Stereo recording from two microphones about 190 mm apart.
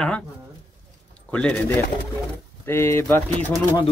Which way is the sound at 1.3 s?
5° left (ahead or behind).